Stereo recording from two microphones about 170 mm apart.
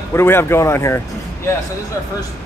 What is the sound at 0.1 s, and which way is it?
Speech, 15° left (ahead or behind).